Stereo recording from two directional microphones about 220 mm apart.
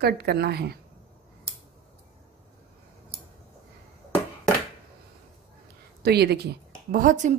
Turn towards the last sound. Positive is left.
turn(degrees=-35)  # may be behind; listen again after turning